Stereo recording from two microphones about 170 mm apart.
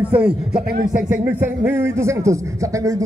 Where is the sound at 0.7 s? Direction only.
55° right (ahead or behind).